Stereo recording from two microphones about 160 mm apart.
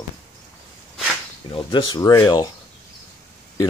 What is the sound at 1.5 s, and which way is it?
Speech, 30° left (ahead or behind).